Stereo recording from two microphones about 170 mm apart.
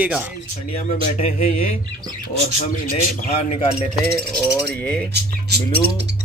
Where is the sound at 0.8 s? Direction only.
45° left (ahead or behind).